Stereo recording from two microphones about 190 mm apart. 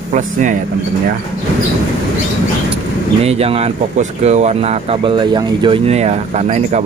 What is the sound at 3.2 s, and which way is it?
Speech, 30° right (ahead or behind).